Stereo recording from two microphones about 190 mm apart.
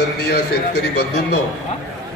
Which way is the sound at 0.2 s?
60° left (ahead or behind).